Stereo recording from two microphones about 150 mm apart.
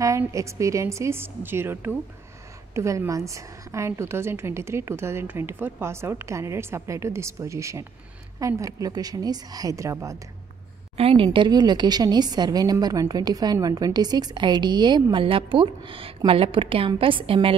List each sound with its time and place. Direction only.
0.3 s a woman's voice: 20° right (ahead or behind)
11.0 s a woman's voice: 40° right (ahead or behind)
11.2 s a woman's voice: 30° right (ahead or behind)